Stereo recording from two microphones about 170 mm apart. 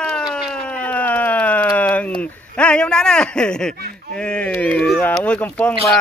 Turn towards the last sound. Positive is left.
turn(degrees=10)  # may be behind; listen again after turning